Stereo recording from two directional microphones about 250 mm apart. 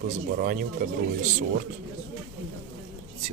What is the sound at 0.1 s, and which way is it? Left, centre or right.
Speech, right.